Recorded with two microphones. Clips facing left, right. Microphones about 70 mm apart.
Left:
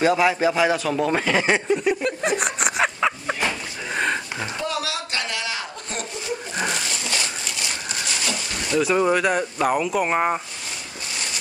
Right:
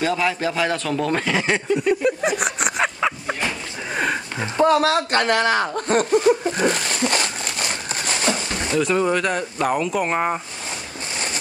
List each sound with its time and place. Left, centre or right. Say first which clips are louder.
0.0 s a man's voice: left 3 dB; centre
2.0 s a sound: right 3 dB; centre
3.9 s sniff: right 1 dB; centre
4.6 s speech: right 13 dB; right
6.7 s crumpling: right 5 dB; right
8.7 s speech: left 1 dB; centre